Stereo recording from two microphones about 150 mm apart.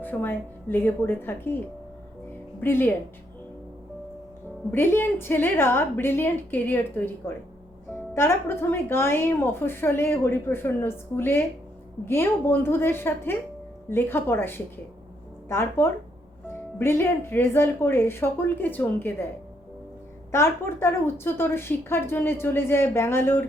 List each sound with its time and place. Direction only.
0.0 s a woman's voice: 15° left (ahead or behind)
2.6 s a woman's voice: 15° left (ahead or behind)
4.7 s a woman's voice: 15° left (ahead or behind)
20.3 s a woman's voice: 15° left (ahead or behind)